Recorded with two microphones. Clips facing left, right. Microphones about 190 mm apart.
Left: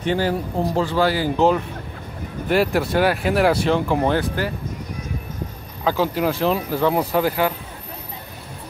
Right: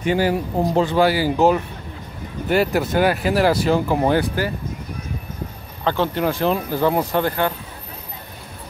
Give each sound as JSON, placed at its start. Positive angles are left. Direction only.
{"t": 0.0, "sound": "speech", "side_deg": -10}
{"t": 1.1, "sound": "speech", "side_deg": -5}
{"t": 5.9, "sound": "speech", "side_deg": 5}